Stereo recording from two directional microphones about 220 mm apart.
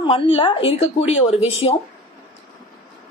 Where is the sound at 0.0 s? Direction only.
25° left (ahead or behind).